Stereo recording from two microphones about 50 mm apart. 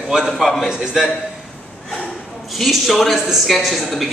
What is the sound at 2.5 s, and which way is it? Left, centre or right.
Speech, centre.